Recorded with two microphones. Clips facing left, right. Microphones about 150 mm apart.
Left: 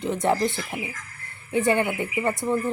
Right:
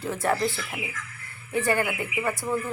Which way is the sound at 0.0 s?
20° left (ahead or behind).